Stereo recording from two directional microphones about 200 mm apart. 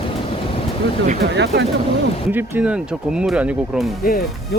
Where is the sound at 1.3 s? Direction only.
60° right (ahead or behind).